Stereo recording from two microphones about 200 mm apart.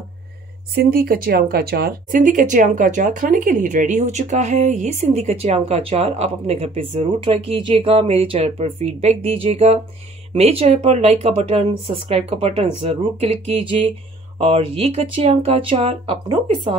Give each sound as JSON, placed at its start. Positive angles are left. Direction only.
{"t": 0.7, "sound": "speech", "side_deg": -50}